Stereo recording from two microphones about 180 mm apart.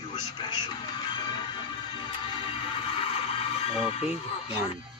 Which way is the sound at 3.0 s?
30° left (ahead or behind).